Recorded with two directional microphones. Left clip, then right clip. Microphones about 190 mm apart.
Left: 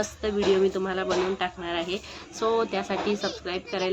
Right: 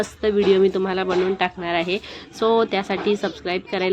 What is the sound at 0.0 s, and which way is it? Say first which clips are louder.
A woman's voice: right 7 dB; 25° right (ahead or behind).